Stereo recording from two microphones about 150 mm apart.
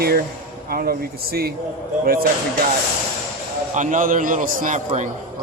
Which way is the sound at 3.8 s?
60° right (ahead or behind).